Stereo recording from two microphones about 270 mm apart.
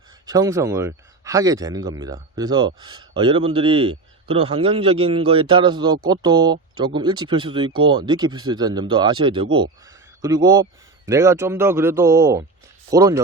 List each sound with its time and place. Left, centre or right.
0.3 s speech: centre